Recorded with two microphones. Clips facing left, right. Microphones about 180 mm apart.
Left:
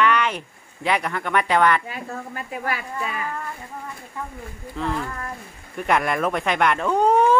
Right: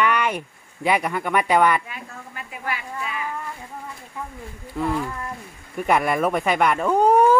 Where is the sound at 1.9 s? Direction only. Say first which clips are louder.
Left 6 dB; 40° left (ahead or behind).